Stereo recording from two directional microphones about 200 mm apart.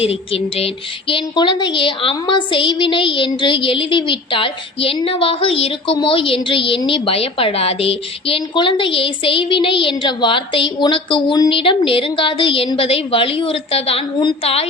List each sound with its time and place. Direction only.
0.0 s speech: 30° left (ahead or behind)